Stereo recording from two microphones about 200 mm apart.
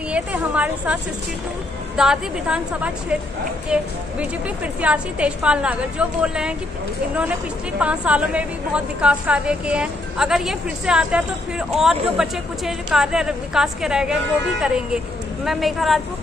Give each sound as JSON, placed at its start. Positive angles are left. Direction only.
{"t": 0.1, "sound": "a woman's voice", "side_deg": -5}
{"t": 2.0, "sound": "a woman's voice", "side_deg": -5}
{"t": 7.8, "sound": "a woman's voice", "side_deg": -5}
{"t": 15.4, "sound": "a woman's voice", "side_deg": 0}